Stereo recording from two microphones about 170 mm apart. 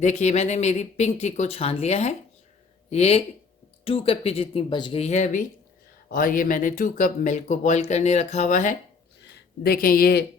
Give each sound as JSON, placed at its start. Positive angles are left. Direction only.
{"t": 0.0, "sound": "speech", "side_deg": 45}
{"t": 9.3, "sound": "speech", "side_deg": 65}